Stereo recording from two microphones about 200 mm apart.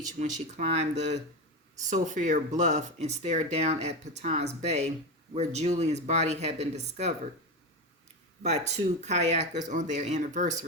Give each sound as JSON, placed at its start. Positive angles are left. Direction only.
{"t": 0.0, "sound": "speech", "side_deg": -35}
{"t": 8.4, "sound": "speech", "side_deg": -35}